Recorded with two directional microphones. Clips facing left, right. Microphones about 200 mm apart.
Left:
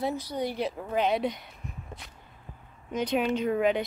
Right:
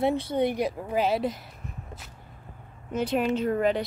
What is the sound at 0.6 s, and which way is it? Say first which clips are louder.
Speech: right 2 dB; 10° right (ahead or behind).